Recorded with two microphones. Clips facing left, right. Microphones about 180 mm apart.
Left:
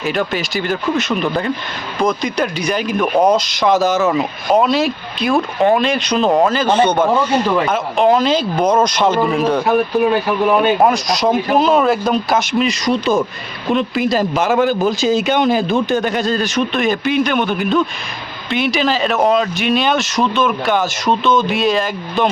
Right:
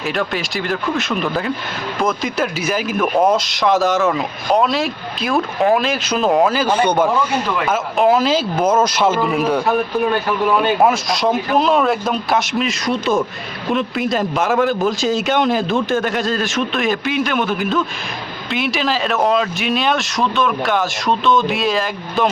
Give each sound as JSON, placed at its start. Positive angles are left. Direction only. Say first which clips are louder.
{"t": 0.0, "sound": "a man's voice", "louder": "left 2 dB", "side_deg": 0}
{"t": 9.6, "sound": "speech", "louder": "left 3 dB", "side_deg": 15}
{"t": 10.8, "sound": "a man's voice", "louder": "left 1 dB", "side_deg": 0}